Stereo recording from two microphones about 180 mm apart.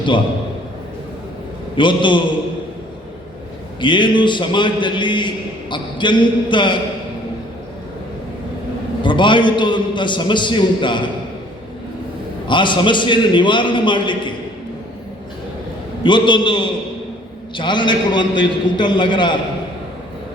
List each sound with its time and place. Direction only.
1.7 s a man's voice: 25° left (ahead or behind)
3.8 s a man's voice: 25° left (ahead or behind)
9.0 s a man's voice: 25° left (ahead or behind)
12.5 s a man's voice: 25° left (ahead or behind)
16.0 s a man's voice: 25° left (ahead or behind)